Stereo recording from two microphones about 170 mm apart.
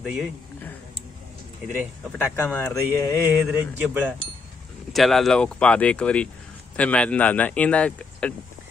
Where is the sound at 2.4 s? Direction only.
15° left (ahead or behind).